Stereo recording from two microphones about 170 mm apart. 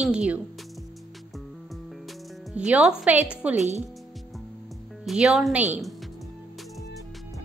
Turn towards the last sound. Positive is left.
turn(degrees=-5)  # may be behind; listen again after turning